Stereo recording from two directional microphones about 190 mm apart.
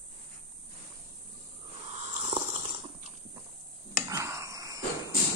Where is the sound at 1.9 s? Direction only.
35° right (ahead or behind).